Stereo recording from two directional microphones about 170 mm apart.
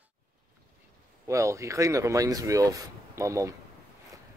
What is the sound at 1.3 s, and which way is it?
Speech, 15° right (ahead or behind).